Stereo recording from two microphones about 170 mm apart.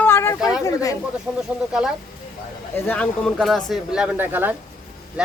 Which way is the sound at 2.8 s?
5° left (ahead or behind).